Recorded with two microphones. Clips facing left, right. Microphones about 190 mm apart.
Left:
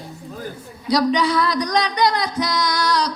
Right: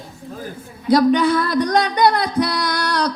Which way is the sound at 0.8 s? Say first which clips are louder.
Right 4 dB; 55° right (ahead or behind).